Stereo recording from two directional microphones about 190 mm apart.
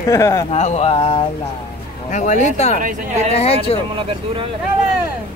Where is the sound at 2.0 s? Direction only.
40° left (ahead or behind).